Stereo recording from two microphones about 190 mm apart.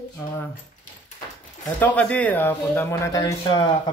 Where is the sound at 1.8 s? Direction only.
10° left (ahead or behind).